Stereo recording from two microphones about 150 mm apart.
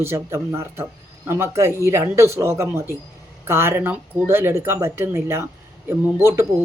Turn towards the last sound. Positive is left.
turn(degrees=-15)  # may be behind; listen again after turning